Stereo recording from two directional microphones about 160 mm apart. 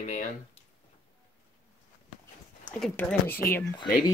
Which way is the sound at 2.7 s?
5° left (ahead or behind).